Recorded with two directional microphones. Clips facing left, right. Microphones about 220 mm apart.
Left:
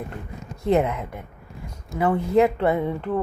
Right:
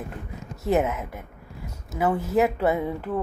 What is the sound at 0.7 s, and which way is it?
A woman's voice, 5° right (ahead or behind).